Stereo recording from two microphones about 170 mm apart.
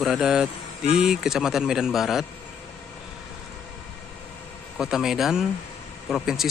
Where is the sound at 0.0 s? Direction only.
Centre (ahead or behind).